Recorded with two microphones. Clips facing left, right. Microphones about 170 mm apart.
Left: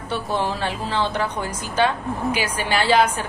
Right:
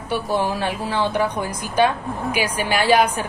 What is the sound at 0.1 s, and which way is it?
A woman's voice, 10° right (ahead or behind).